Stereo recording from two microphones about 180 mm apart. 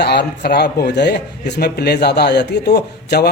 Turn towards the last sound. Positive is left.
turn(degrees=60)  # may be behind; listen again after turning